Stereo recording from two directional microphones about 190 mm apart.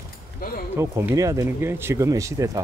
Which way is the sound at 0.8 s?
15° right (ahead or behind).